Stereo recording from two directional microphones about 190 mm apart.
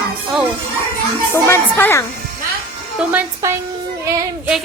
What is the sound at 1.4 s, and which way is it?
Speech, 10° left (ahead or behind).